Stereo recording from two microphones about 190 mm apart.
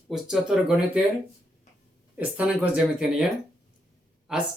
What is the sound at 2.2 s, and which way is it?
Speech, 5° right (ahead or behind).